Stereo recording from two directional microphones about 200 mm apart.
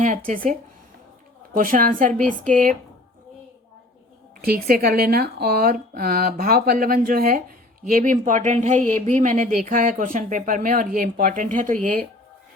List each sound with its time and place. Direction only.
0.0 s speech: 40° right (ahead or behind)
1.5 s speech: 45° right (ahead or behind)
4.4 s speech: 45° right (ahead or behind)